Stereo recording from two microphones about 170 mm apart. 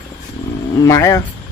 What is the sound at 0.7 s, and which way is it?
Speech, 20° left (ahead or behind).